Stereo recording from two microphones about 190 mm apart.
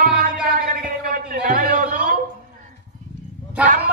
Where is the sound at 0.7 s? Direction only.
50° right (ahead or behind).